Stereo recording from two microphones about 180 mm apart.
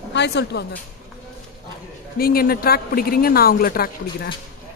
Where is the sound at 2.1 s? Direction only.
55° left (ahead or behind).